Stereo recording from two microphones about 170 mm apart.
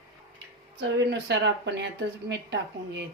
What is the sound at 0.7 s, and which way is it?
A woman's voice, 85° right.